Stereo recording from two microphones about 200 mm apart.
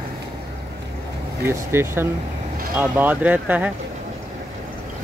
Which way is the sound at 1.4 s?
15° right (ahead or behind).